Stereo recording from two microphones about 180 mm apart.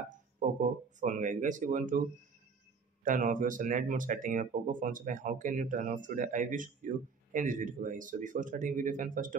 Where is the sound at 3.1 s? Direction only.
50° right (ahead or behind).